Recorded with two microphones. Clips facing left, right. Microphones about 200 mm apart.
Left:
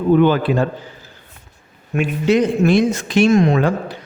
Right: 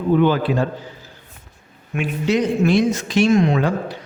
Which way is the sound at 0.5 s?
60° left (ahead or behind).